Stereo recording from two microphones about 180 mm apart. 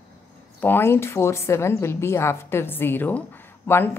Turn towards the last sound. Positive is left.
turn(degrees=10)  # may be behind; listen again after turning